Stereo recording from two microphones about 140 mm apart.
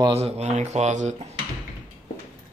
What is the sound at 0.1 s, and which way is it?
Speech, 50° right (ahead or behind).